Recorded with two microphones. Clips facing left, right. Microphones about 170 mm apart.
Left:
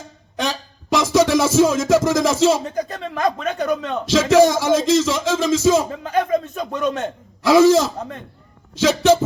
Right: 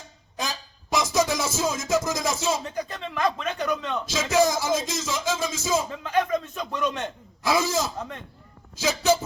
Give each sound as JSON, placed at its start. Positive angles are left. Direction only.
{"t": 0.3, "sound": "music", "side_deg": 90}
{"t": 2.6, "sound": "speech", "side_deg": 40}
{"t": 4.1, "sound": "speech", "side_deg": 90}
{"t": 5.9, "sound": "a sound", "side_deg": 35}
{"t": 6.8, "sound": "a man's voice", "side_deg": 45}
{"t": 7.4, "sound": "a man's voice", "side_deg": 90}